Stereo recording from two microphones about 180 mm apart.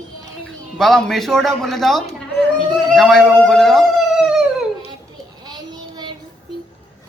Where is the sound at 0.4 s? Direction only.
5° left (ahead or behind).